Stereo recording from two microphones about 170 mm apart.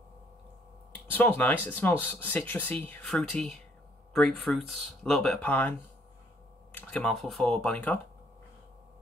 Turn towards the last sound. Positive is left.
turn(degrees=5)  # may be behind; listen again after turning